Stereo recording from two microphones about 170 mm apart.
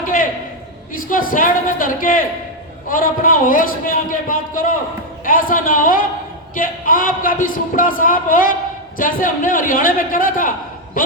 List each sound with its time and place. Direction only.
0.9 s a man's voice: 55° left (ahead or behind)